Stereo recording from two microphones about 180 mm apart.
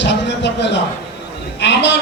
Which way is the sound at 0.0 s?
75° left (ahead or behind).